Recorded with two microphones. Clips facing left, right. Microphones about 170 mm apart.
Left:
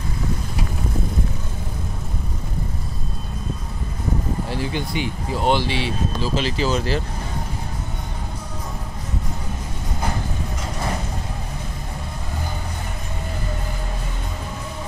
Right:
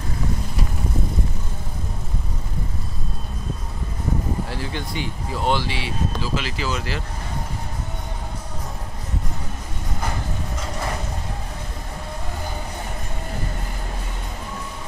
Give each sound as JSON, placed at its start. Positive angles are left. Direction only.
{"t": 4.5, "sound": "speech", "side_deg": 20}